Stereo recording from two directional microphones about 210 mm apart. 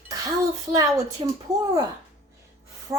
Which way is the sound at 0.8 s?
15° right (ahead or behind).